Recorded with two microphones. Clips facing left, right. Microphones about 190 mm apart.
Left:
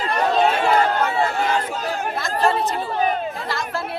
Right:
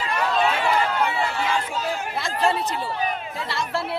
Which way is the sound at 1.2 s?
50° left (ahead or behind).